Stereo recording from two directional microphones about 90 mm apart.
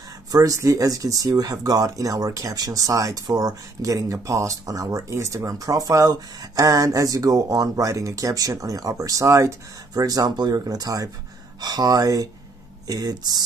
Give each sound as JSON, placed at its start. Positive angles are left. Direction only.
{"t": 0.3, "sound": "speech", "side_deg": -40}